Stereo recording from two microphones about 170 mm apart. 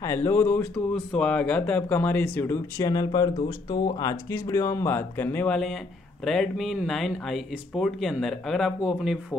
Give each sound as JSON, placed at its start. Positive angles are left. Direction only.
{"t": 0.0, "sound": "speech", "side_deg": 15}
{"t": 0.9, "sound": "speech", "side_deg": 5}